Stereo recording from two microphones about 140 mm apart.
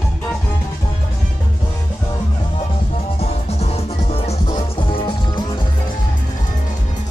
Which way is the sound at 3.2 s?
50° left (ahead or behind).